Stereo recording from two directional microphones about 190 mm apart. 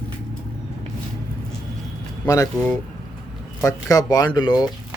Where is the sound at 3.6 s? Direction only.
15° left (ahead or behind).